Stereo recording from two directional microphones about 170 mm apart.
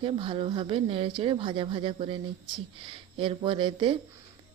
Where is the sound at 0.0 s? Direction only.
30° right (ahead or behind).